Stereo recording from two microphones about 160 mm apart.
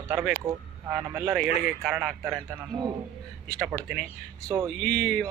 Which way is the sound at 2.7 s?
25° right (ahead or behind).